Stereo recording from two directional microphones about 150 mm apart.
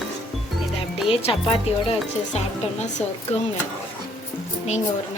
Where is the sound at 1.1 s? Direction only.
40° left (ahead or behind).